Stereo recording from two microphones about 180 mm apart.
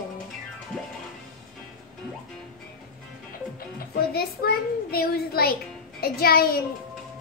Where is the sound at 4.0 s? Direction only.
60° left (ahead or behind).